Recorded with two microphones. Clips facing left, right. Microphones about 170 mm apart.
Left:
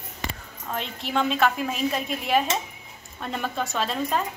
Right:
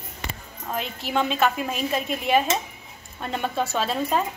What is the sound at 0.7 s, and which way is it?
A woman's voice, 5° right (ahead or behind).